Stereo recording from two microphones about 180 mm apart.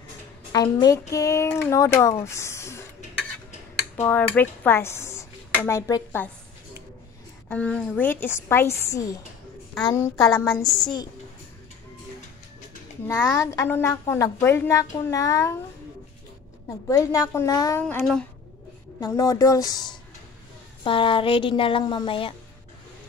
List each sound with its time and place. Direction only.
0.5 s a woman's voice: 20° left (ahead or behind)
3.9 s speech: 10° left (ahead or behind)
7.4 s a woman's voice: 10° left (ahead or behind)
10.3 s a sound: centre (ahead or behind)
13.0 s a woman's voice: 15° left (ahead or behind)
16.9 s a woman's voice: 15° left (ahead or behind)
17.8 s a sound: 5° left (ahead or behind)
18.9 s a woman's voice: 20° left (ahead or behind)